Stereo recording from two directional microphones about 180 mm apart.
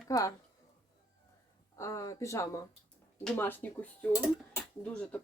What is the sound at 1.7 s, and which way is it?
A woman's voice, 15° left (ahead or behind).